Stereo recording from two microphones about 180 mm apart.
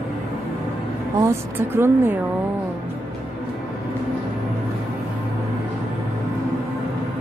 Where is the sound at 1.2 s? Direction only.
15° right (ahead or behind).